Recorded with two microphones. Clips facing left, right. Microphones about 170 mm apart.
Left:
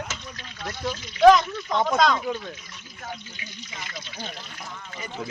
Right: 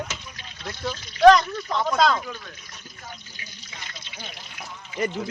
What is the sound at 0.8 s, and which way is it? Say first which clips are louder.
Speech: right 1 dB; 5° left (ahead or behind).